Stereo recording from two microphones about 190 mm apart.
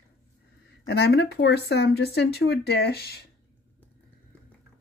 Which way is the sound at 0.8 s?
60° left (ahead or behind).